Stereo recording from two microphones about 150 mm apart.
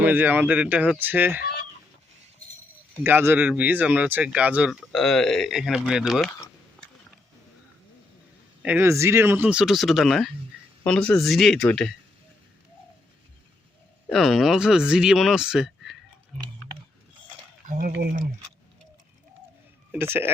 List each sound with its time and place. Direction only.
0.0 s speech: 10° right (ahead or behind)
3.0 s speech: 15° right (ahead or behind)
8.6 s speech: 10° right (ahead or behind); by 11.9 s 5° left (ahead or behind)
14.1 s speech: centre (ahead or behind)
17.7 s speech: 65° right (ahead or behind)
19.9 s a man's voice: 15° right (ahead or behind)